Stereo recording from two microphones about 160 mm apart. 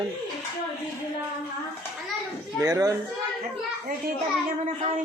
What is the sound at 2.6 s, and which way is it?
Speech, 20° right (ahead or behind).